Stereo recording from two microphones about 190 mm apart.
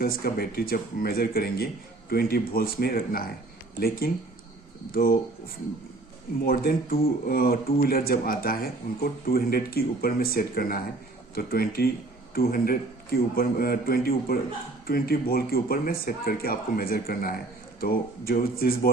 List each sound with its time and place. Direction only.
0.0 s speech: 50° left (ahead or behind)
6.4 s speech: 50° left (ahead or behind)